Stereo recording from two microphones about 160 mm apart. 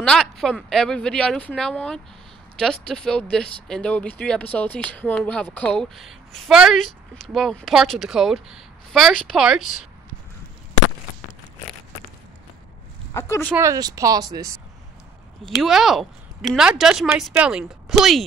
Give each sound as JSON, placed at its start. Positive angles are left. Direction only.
{"t": 0.0, "sound": "speech", "side_deg": 5}
{"t": 13.1, "sound": "speech", "side_deg": 15}
{"t": 13.5, "sound": "speech", "side_deg": -20}
{"t": 15.4, "sound": "speech", "side_deg": 0}